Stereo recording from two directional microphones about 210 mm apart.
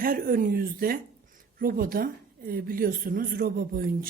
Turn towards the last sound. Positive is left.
turn(degrees=-45)  # may be behind; listen again after turning